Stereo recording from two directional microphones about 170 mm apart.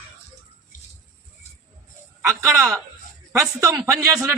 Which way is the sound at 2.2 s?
15° right (ahead or behind).